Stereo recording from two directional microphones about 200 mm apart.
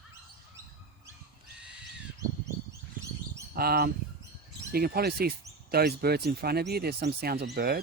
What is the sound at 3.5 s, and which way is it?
Bird, 50° right (ahead or behind).